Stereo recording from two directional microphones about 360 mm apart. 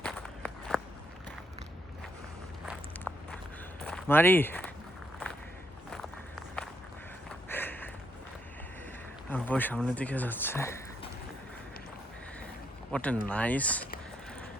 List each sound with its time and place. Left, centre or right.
0.0 s walk: centre
3.1 s walk: centre
3.8 s speech: centre
5.9 s walk: centre
7.4 s a sound: centre
9.3 s speech: centre
12.9 s speech: centre